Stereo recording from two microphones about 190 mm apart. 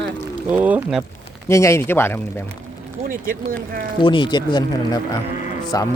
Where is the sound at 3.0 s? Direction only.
45° right (ahead or behind).